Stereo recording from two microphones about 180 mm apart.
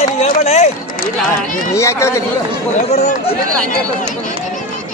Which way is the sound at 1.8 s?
15° left (ahead or behind).